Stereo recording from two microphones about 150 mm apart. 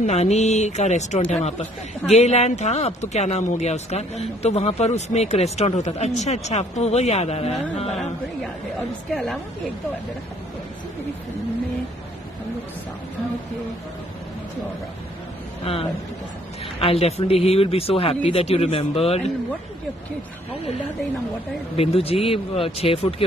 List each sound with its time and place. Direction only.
0.0 s speech: 45° left (ahead or behind)
9.1 s a woman's voice: centre (ahead or behind)
15.6 s a man's voice: 40° left (ahead or behind)
21.7 s a man's voice: 40° left (ahead or behind)